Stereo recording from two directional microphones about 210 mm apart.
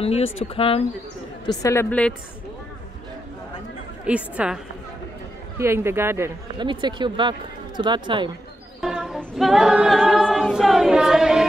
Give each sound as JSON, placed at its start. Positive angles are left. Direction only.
{"t": 0.0, "sound": "a woman's voice", "side_deg": 30}
{"t": 4.0, "sound": "a woman's voice", "side_deg": -5}
{"t": 5.6, "sound": "speech", "side_deg": -10}
{"t": 8.8, "sound": "a capella", "side_deg": 0}